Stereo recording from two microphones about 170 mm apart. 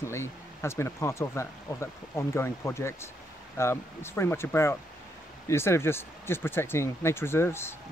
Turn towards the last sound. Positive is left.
turn(degrees=15)  # may be behind; listen again after turning